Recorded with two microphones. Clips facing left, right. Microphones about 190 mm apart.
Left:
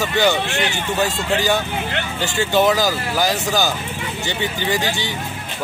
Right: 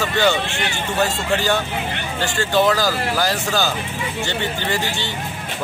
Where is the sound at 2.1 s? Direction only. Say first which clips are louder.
Even; 20° left (ahead or behind).